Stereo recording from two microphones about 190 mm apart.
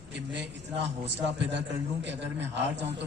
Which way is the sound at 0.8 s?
65° right (ahead or behind).